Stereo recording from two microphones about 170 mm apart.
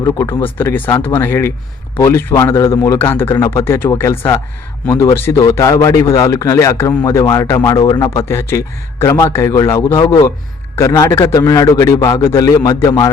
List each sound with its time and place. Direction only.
0.0 s speech: 20° left (ahead or behind)